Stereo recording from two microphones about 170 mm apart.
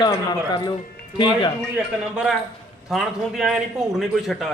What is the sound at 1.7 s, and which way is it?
A man's voice, 5° right (ahead or behind).